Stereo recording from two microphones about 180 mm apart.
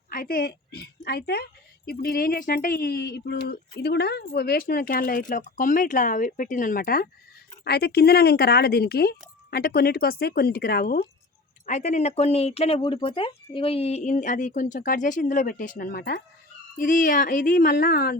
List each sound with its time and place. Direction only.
0.1 s a woman's voice: 55° left (ahead or behind)
11.6 s speech: 40° left (ahead or behind); by 18.2 s 55° left (ahead or behind)